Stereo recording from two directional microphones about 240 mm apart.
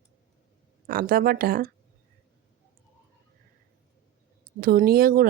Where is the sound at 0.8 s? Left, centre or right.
Right.